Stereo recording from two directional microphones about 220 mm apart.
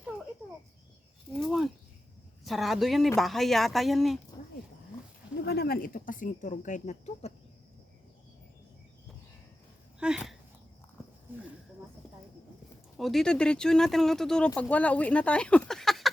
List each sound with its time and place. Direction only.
1.4 s a sound: centre (ahead or behind)
2.4 s speech: centre (ahead or behind)
5.4 s speech: 45° left (ahead or behind); by 7.3 s 30° left (ahead or behind)
10.0 s speech: 5° right (ahead or behind)
13.0 s speech: centre (ahead or behind)